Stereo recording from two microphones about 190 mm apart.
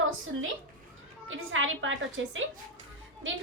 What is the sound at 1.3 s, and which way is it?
A woman's voice, 90° right.